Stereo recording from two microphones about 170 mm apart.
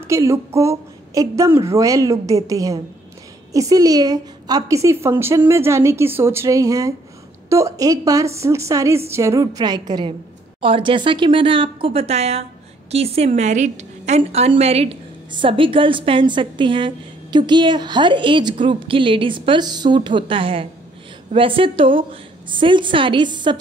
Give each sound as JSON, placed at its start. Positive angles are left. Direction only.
{"t": 0.0, "sound": "a woman's voice", "side_deg": -15}